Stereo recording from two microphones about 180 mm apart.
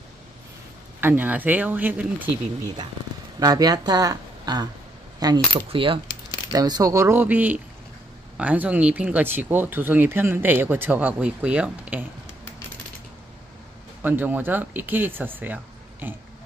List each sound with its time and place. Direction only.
1.0 s speech: 10° right (ahead or behind)
3.3 s speech: 20° right (ahead or behind)
14.0 s speech: 10° right (ahead or behind)